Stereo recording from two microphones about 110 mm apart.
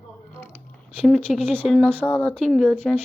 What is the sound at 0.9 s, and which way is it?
Speech, 5° left (ahead or behind).